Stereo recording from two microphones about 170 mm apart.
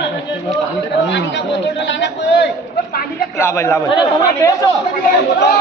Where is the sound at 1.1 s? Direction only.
90° left.